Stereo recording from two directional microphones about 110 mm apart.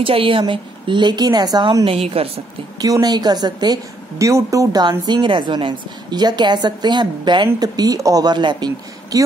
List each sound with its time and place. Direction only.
0.0 s a woman's voice: 55° right (ahead or behind); by 1.9 s 40° right (ahead or behind)
1.9 s a woman's voice: 65° right (ahead or behind)
2.8 s a woman's voice: 35° right (ahead or behind)